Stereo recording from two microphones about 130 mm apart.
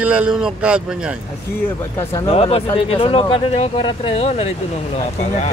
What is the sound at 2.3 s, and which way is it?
Speech, 50° left (ahead or behind).